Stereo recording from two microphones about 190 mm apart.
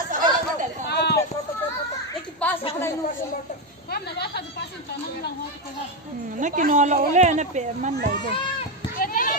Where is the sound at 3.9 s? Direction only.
60° left (ahead or behind).